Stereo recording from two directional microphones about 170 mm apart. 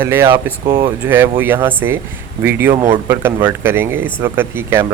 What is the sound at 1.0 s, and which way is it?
Speech, 10° right (ahead or behind).